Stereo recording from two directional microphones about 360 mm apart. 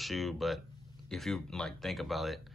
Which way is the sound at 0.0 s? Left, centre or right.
Centre.